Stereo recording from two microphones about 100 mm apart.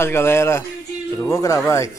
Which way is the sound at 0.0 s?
25° left (ahead or behind).